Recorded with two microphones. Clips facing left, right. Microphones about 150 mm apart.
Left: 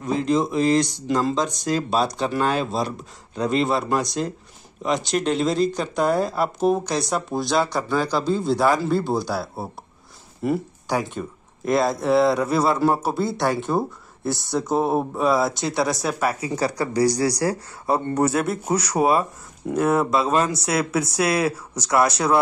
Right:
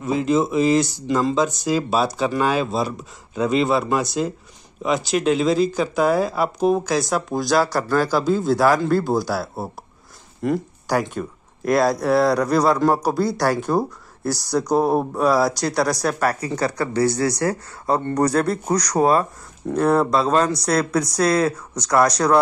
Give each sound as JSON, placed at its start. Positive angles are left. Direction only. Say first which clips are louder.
{"t": 0.0, "sound": "speech", "louder": "right 2 dB", "side_deg": -5}
{"t": 17.3, "sound": "speech", "louder": "right 1 dB", "side_deg": 30}
{"t": 17.8, "sound": "speech", "louder": "right 1 dB", "side_deg": 10}
{"t": 21.0, "sound": "speech", "louder": "right 3 dB", "side_deg": 30}